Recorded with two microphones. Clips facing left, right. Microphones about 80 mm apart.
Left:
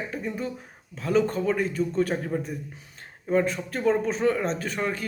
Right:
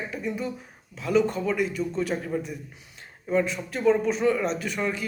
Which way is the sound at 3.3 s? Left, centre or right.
Left.